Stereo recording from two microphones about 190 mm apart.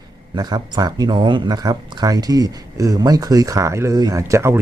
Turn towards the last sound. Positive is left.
turn(degrees=-15)  # may be behind; listen again after turning